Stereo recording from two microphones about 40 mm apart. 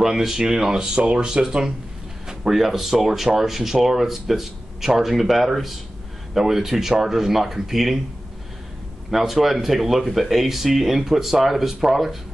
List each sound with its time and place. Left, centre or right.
0.0 s speech: centre
9.1 s speech: centre